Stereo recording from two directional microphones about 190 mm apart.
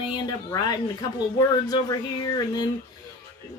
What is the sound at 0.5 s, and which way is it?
Speech, 20° left (ahead or behind).